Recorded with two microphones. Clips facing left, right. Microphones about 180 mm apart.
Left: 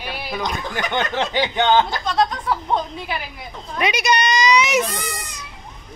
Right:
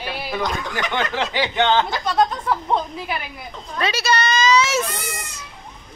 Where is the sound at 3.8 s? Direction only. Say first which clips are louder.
Left 1 dB; 15° left (ahead or behind).